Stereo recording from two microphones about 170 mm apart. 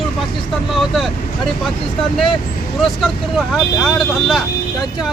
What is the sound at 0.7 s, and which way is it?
Speech, centre (ahead or behind).